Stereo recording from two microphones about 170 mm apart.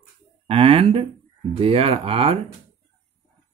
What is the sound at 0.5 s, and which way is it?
Speech, 35° right (ahead or behind).